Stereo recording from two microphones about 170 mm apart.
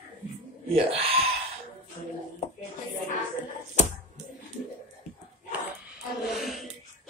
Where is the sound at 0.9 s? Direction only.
35° right (ahead or behind).